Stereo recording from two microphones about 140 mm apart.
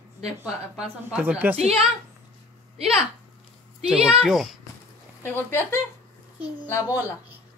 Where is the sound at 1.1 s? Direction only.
10° right (ahead or behind).